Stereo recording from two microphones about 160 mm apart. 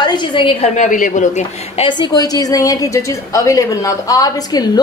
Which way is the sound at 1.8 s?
30° left (ahead or behind).